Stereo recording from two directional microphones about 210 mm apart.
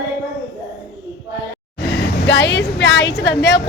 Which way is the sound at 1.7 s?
55° left (ahead or behind).